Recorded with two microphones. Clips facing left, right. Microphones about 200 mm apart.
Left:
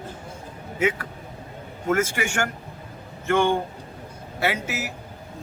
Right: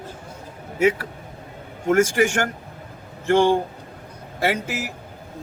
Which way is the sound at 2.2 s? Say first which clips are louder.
Right 6 dB; 35° right (ahead or behind).